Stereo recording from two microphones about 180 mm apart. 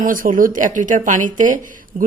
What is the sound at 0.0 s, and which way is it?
A woman's voice, 50° right (ahead or behind).